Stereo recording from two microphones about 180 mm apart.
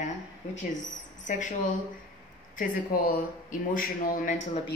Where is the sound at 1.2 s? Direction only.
45° left (ahead or behind).